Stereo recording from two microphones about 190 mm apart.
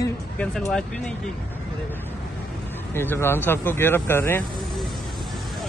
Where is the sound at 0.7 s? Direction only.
5° left (ahead or behind).